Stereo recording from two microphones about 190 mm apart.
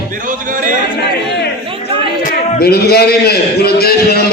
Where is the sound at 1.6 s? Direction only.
30° right (ahead or behind).